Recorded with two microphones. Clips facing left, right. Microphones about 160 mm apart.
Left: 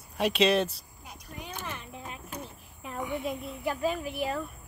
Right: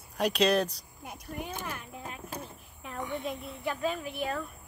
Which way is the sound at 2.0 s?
35° right (ahead or behind).